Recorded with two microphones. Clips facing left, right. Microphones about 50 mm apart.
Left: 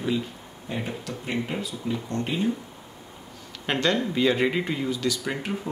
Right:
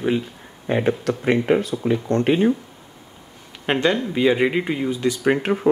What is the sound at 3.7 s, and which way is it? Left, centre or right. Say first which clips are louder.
Speech: right 4 dB; right.